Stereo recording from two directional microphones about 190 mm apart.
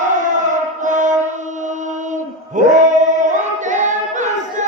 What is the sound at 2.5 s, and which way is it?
Singing, 40° right (ahead or behind).